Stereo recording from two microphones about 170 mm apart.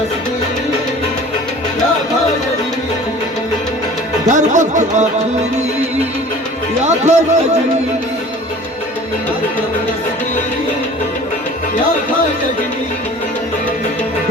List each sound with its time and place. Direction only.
4.3 s music: 45° right (ahead or behind)
6.8 s speech: 40° right (ahead or behind)